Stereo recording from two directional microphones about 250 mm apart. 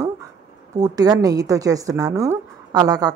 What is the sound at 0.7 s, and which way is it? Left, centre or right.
Speech, centre.